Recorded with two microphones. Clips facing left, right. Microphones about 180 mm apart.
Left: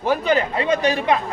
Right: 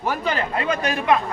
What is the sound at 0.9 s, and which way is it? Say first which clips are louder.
Speech: even; 25° left (ahead or behind).